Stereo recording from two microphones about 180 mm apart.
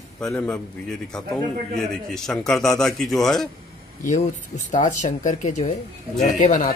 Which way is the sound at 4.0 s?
40° left (ahead or behind).